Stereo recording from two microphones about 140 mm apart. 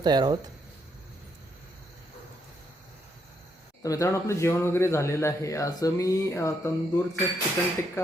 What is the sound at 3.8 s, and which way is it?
Speech, 25° left (ahead or behind).